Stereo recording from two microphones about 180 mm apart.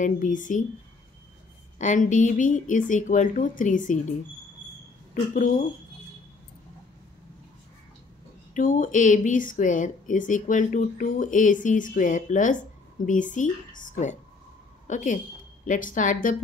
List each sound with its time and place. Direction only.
0.0 s speech: 45° left (ahead or behind)
1.8 s speech: 45° left (ahead or behind)
5.3 s speech: 50° left (ahead or behind)
8.5 s speech: 45° left (ahead or behind)
14.9 s a woman's voice: 45° left (ahead or behind)